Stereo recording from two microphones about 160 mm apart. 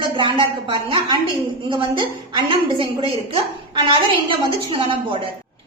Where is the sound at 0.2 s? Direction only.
30° right (ahead or behind).